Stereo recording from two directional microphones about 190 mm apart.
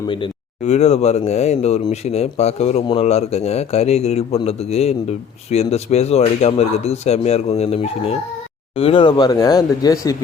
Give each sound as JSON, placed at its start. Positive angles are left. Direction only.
{"t": 0.1, "sound": "speech", "side_deg": 30}